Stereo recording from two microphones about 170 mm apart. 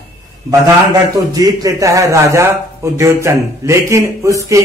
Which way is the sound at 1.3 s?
20° right (ahead or behind).